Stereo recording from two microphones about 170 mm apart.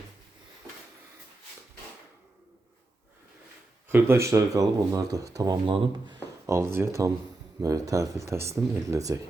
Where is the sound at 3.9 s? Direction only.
15° right (ahead or behind).